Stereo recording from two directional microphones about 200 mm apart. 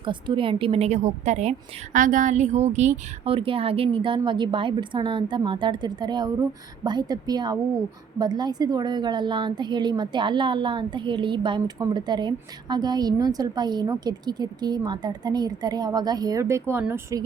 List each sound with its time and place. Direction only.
0.0 s a woman's voice: 25° right (ahead or behind)